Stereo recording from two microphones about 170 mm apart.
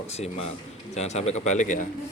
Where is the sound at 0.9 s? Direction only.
40° left (ahead or behind).